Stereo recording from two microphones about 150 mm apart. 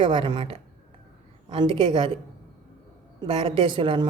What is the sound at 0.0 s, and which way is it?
A woman's voice, 35° right (ahead or behind).